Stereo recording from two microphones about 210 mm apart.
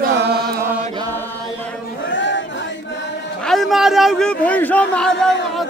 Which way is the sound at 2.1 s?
60° left (ahead or behind).